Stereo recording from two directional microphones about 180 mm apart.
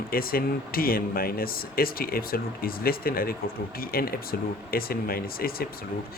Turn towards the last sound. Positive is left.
turn(degrees=55)  # may be behind; listen again after turning